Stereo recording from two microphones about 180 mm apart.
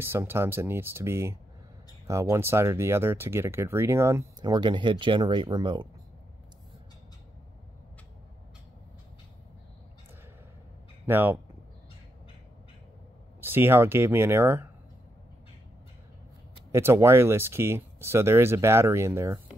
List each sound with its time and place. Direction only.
0.0 s speech: 10° right (ahead or behind)
11.1 s speech: 10° right (ahead or behind)
13.4 s speech: 10° right (ahead or behind)
16.7 s speech: 15° right (ahead or behind)